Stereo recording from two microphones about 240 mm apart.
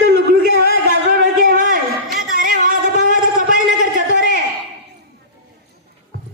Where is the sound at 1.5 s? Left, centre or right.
Right.